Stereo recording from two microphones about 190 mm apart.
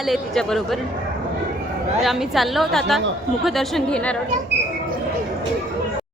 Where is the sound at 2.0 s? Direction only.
Centre (ahead or behind).